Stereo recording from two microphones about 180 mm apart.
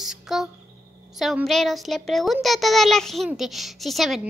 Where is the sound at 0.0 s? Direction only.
Centre (ahead or behind).